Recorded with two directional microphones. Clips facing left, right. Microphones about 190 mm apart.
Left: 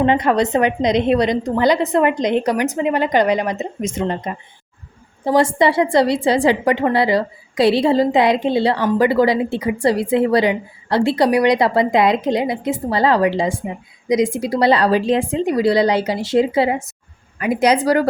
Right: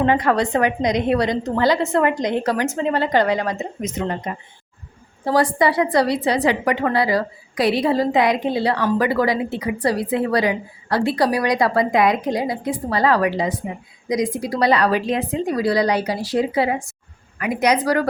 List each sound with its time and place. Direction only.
0.0 s a woman's voice: 20° left (ahead or behind)
5.2 s a woman's voice: 25° left (ahead or behind)